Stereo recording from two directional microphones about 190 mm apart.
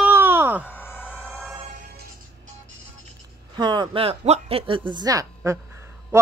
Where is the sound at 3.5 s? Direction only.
25° right (ahead or behind).